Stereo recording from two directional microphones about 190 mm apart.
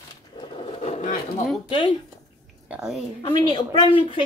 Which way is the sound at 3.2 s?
25° left (ahead or behind).